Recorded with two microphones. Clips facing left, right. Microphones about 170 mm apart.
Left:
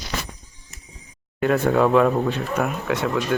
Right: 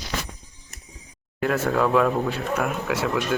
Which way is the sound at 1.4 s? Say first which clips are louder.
Left 4 dB; centre (ahead or behind).